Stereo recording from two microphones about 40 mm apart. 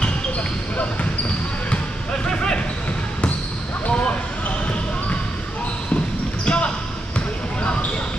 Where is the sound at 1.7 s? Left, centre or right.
Left.